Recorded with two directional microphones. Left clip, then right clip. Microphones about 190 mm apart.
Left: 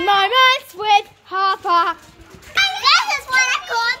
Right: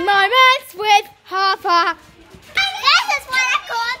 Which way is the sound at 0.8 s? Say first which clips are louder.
Right 1 dB; 30° right (ahead or behind).